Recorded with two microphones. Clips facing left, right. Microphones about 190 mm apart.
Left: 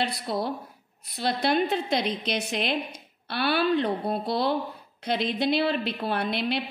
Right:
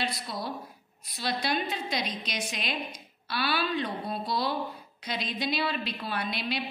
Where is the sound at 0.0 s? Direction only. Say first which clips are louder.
Left 6 dB; 60° left (ahead or behind).